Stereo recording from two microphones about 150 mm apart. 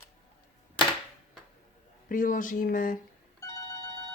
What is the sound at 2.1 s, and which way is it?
Speech, 65° left (ahead or behind).